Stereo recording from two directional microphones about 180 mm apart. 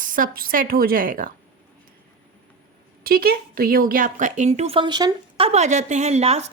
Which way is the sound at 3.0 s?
55° right (ahead or behind).